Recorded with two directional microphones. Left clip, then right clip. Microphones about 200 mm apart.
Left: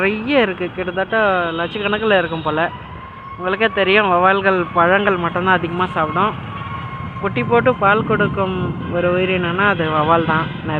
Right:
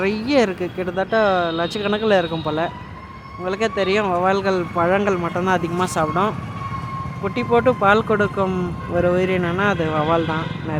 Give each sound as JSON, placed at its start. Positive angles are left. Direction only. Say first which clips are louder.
{"t": 0.0, "sound": "speech", "louder": "left 2 dB", "side_deg": -20}